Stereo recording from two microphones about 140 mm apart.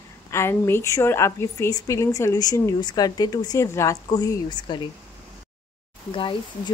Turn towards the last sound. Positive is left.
turn(degrees=35)  # may be behind; listen again after turning